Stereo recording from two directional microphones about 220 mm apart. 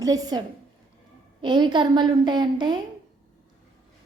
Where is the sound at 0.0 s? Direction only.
15° right (ahead or behind).